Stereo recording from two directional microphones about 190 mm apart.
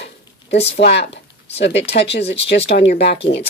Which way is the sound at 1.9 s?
60° left (ahead or behind).